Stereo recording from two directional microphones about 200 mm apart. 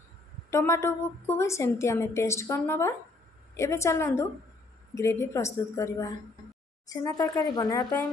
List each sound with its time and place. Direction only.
0.5 s a woman's voice: 15° left (ahead or behind)